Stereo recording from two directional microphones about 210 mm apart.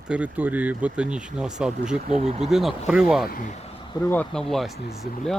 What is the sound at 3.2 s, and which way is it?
Speech, 40° left (ahead or behind).